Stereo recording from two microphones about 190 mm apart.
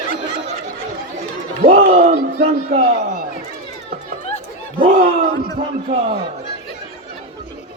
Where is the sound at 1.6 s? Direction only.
30° right (ahead or behind).